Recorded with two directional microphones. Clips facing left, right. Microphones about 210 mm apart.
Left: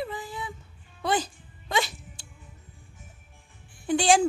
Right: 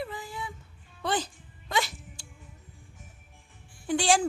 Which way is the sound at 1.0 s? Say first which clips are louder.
Left 3 dB; 10° left (ahead or behind).